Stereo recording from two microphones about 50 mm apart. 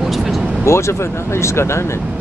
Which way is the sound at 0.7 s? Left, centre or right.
Left.